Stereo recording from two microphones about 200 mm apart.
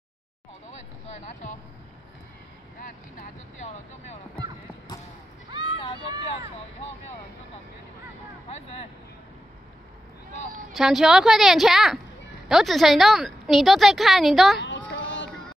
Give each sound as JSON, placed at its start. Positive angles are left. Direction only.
{"t": 1.0, "sound": "speech", "side_deg": 35}
{"t": 2.8, "sound": "speech", "side_deg": 40}
{"t": 5.5, "sound": "a sound", "side_deg": -20}
{"t": 10.7, "sound": "a woman's voice", "side_deg": 0}
{"t": 14.9, "sound": "run", "side_deg": 65}